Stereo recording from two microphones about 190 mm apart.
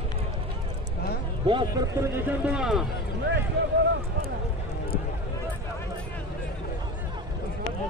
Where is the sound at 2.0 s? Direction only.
5° right (ahead or behind).